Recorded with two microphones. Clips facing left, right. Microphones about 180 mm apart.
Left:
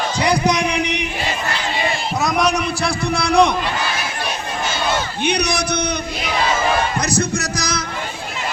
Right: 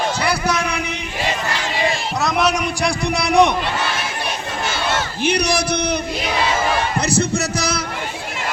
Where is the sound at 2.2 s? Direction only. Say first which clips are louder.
Even; 5° right (ahead or behind).